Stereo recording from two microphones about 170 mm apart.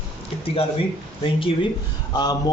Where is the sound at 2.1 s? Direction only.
25° left (ahead or behind).